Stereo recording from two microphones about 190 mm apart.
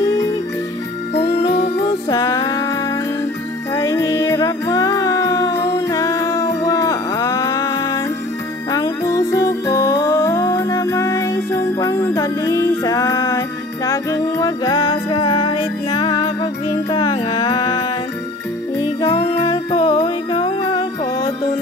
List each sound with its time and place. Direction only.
2.0 s music: 20° left (ahead or behind)
3.7 s music: 15° left (ahead or behind)
18.9 s music: 30° left (ahead or behind)